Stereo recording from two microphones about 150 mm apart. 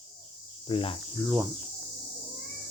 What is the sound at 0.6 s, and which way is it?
Cricket, 35° left (ahead or behind).